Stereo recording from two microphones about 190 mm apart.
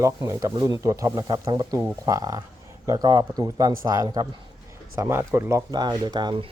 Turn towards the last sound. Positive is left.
turn(degrees=-25)  # may be behind; listen again after turning